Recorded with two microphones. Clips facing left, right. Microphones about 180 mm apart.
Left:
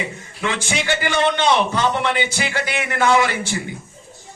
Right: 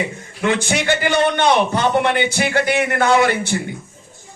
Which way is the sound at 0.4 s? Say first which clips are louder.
Right 5 dB; 55° right (ahead or behind).